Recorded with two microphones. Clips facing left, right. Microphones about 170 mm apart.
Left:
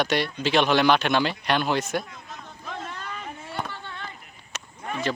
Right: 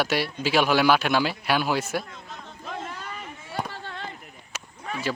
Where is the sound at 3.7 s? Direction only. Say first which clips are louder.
Right 1 dB; 35° right (ahead or behind).